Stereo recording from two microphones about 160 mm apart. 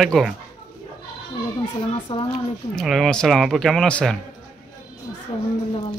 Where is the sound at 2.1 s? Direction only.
35° left (ahead or behind).